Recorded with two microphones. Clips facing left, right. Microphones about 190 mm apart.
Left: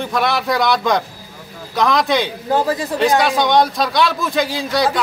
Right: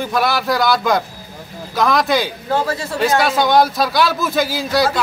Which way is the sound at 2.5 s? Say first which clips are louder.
Left 3 dB; 15° left (ahead or behind).